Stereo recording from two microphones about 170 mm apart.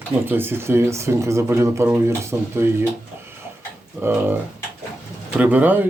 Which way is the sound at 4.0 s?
10° right (ahead or behind).